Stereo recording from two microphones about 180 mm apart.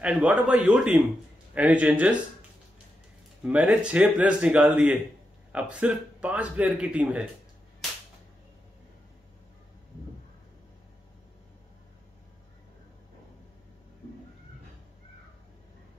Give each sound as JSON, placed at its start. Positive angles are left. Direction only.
{"t": 0.0, "sound": "a man's voice", "side_deg": -5}
{"t": 3.4, "sound": "a man's voice", "side_deg": -5}